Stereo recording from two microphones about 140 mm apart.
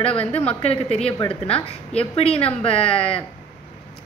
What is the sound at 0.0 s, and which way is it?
Speech, 45° left (ahead or behind).